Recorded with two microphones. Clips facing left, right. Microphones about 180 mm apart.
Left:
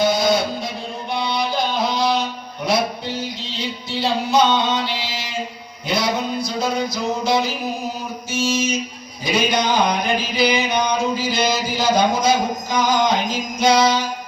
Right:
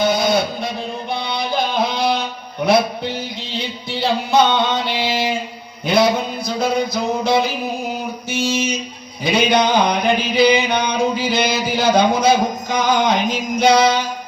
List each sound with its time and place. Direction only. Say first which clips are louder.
0.0 s music: right 1 dB; 60° right (ahead or behind)
4.0 s music: right 2 dB; 55° right (ahead or behind)
8.4 s a sound: even; 60° right (ahead or behind)
12.7 s music: right 1 dB; 60° right (ahead or behind)